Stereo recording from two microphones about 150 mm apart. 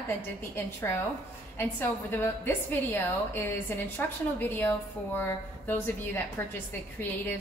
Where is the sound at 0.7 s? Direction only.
15° left (ahead or behind).